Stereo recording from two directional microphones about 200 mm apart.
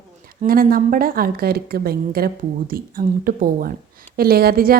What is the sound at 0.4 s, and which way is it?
A woman's voice, 45° right (ahead or behind).